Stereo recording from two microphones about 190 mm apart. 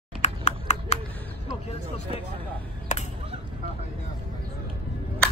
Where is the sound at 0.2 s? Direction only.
35° left (ahead or behind).